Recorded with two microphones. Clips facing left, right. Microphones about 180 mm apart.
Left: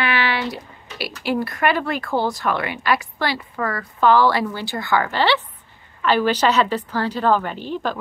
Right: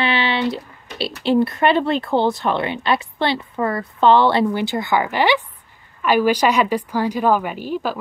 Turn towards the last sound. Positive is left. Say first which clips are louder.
# right 2 dB
turn(degrees=-5)  # may be behind; listen again after turning